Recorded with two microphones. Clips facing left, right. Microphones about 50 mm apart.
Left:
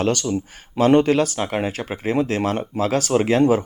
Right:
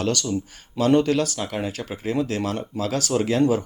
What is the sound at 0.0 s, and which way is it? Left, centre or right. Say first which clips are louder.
Speech: left 3 dB; left.